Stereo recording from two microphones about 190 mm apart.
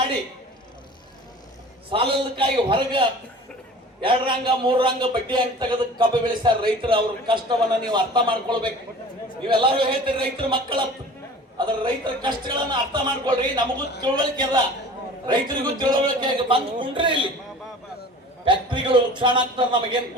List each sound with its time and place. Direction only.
1.9 s a man's voice: 25° right (ahead or behind)
18.4 s a man's voice: 25° right (ahead or behind)